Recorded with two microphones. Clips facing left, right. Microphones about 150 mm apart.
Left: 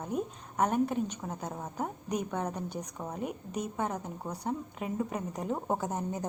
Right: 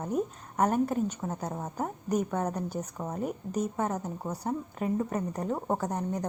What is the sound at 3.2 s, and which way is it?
Speech, 40° right (ahead or behind).